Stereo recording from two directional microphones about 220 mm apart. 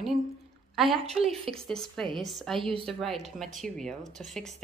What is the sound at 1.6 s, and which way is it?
A woman's voice, centre (ahead or behind).